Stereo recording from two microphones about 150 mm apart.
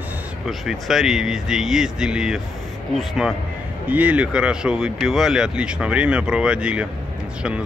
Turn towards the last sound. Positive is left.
turn(degrees=-5)  # may be behind; listen again after turning